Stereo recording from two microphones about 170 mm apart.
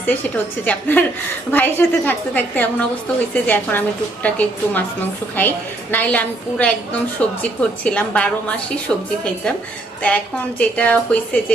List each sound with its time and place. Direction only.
0.6 s a woman's voice: 10° left (ahead or behind)